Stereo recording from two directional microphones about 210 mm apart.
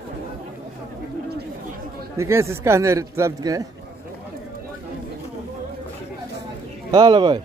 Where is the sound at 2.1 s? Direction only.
15° right (ahead or behind).